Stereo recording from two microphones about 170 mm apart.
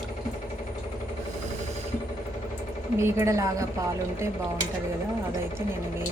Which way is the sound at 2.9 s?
15° right (ahead or behind).